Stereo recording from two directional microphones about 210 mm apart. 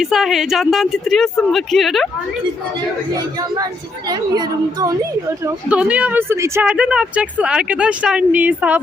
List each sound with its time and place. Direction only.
0.0 s speech: centre (ahead or behind)
3.3 s speech: 20° right (ahead or behind)
5.4 s speech: 5° right (ahead or behind)